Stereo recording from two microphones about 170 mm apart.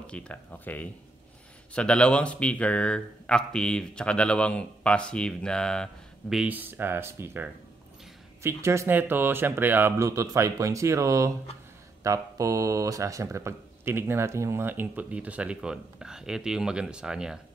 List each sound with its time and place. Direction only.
0.0 s speech: 5° left (ahead or behind)